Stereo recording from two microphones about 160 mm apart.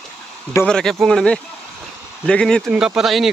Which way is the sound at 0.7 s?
5° left (ahead or behind).